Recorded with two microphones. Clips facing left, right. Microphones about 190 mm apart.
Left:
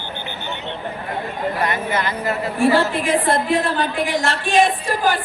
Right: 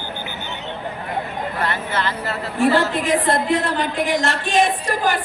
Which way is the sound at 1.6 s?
15° left (ahead or behind).